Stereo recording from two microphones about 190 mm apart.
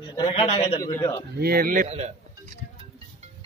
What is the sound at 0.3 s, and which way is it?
Speech, 30° left (ahead or behind).